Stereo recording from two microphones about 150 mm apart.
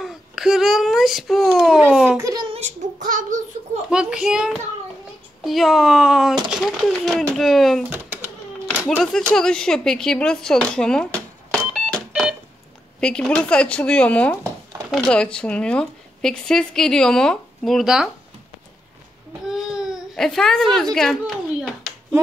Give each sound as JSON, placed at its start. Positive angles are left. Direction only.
{"t": 0.0, "sound": "a child's voice", "side_deg": 0}
{"t": 2.1, "sound": "a child's voice", "side_deg": -20}
{"t": 2.4, "sound": "a sound", "side_deg": -40}
{"t": 3.1, "sound": "a child's voice", "side_deg": -60}
{"t": 3.9, "sound": "speech", "side_deg": -5}
{"t": 8.8, "sound": "speech", "side_deg": 5}
{"t": 12.1, "sound": "beep", "side_deg": -5}
{"t": 13.0, "sound": "speech", "side_deg": 5}
{"t": 19.4, "sound": "baby cry", "side_deg": -5}